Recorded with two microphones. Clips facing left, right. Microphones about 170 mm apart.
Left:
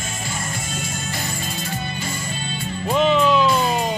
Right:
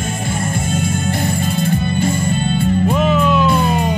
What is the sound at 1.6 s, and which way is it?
Music, 55° right (ahead or behind).